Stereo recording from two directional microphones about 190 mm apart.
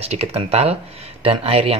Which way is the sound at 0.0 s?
30° right (ahead or behind).